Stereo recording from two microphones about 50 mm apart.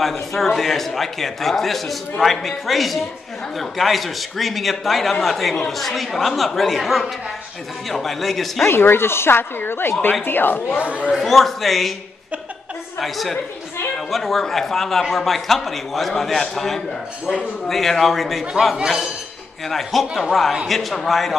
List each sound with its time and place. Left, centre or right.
0.0 s a man's voice: centre
8.6 s speech: left
10.8 s speech: right
11.1 s a man's voice: centre
13.0 s a man's voice: centre
19.6 s a man's voice: centre